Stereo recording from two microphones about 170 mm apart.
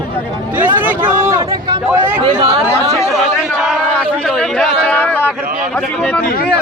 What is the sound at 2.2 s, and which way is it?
Speech, 25° right (ahead or behind).